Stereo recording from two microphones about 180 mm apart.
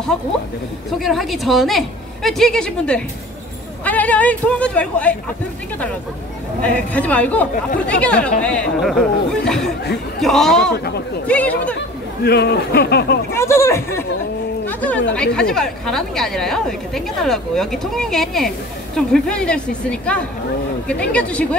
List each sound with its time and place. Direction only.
0.9 s a woman's voice: centre (ahead or behind)
6.6 s a woman's voice: 10° left (ahead or behind)
12.2 s speech: 65° left (ahead or behind)
13.3 s a woman's voice: 15° left (ahead or behind)